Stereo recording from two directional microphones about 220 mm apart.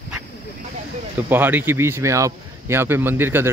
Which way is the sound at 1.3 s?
10° right (ahead or behind).